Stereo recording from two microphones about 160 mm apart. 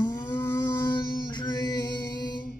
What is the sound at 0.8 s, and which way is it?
Music, 30° left (ahead or behind).